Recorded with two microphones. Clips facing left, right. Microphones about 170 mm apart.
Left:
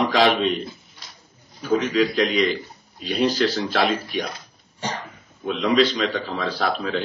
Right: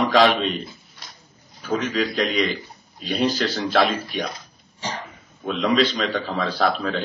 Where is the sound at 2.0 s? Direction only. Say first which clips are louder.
Left 2 dB; 50° right (ahead or behind).